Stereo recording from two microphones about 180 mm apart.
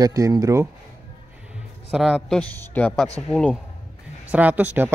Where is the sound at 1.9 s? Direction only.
Centre (ahead or behind).